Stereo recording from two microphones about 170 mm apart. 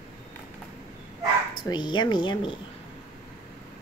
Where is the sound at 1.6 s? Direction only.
25° left (ahead or behind).